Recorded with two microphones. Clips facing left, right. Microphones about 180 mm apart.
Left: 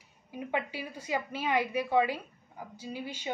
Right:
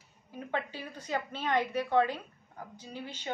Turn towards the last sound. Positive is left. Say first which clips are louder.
# left 3 dB
turn(degrees=10)  # may be behind; listen again after turning